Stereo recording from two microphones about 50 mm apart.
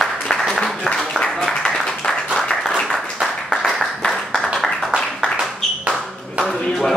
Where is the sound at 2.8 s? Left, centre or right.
Centre.